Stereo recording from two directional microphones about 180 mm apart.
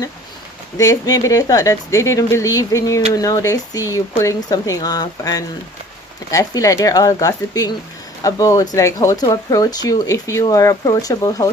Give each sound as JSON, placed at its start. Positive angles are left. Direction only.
{"t": 0.7, "sound": "speech", "side_deg": 20}